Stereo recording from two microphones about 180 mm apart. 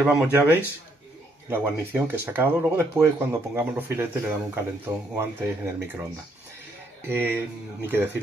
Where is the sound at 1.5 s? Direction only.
10° right (ahead or behind).